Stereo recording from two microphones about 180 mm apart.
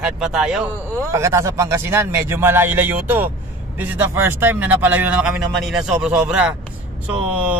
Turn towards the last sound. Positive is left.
turn(degrees=-5)  # may be behind; listen again after turning